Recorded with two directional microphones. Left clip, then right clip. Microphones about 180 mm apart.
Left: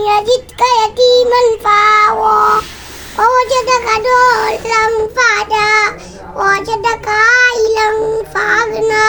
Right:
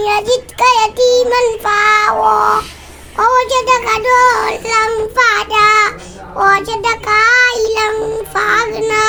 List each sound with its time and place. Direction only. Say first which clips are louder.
0.0 s child singing: left 2 dB; 25° right (ahead or behind)